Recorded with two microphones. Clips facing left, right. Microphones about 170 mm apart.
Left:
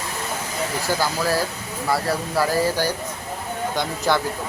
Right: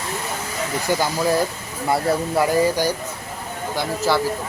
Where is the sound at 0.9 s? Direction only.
15° right (ahead or behind).